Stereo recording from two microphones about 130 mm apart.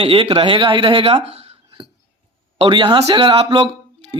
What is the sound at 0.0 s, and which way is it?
Speech, 45° right (ahead or behind).